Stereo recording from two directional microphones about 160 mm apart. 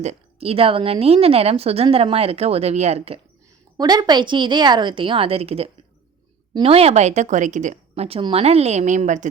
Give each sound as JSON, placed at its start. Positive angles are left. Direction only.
{"t": 0.0, "sound": "a woman's voice", "side_deg": -40}
{"t": 3.8, "sound": "a woman's voice", "side_deg": -25}